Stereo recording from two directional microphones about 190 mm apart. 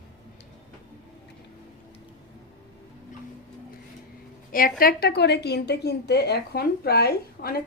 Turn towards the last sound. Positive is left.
turn(degrees=50)  # may be behind; listen again after turning